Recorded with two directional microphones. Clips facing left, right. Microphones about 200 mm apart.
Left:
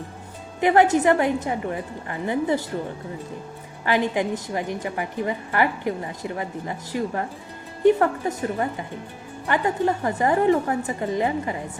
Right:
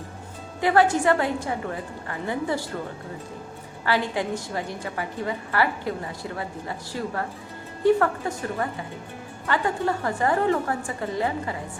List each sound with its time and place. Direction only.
0.6 s a woman's voice: 20° left (ahead or behind)
3.8 s a woman's voice: 15° left (ahead or behind)